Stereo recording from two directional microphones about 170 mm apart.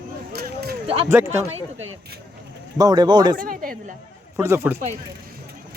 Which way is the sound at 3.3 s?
55° right (ahead or behind).